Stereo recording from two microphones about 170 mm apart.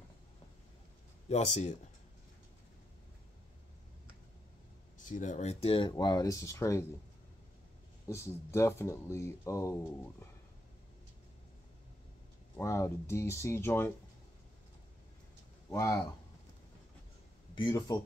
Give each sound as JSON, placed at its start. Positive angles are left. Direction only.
{"t": 1.3, "sound": "speech", "side_deg": 40}
{"t": 4.9, "sound": "speech", "side_deg": 50}
{"t": 8.1, "sound": "speech", "side_deg": 15}
{"t": 12.5, "sound": "speech", "side_deg": 15}
{"t": 15.7, "sound": "speech", "side_deg": 20}
{"t": 17.6, "sound": "speech", "side_deg": 25}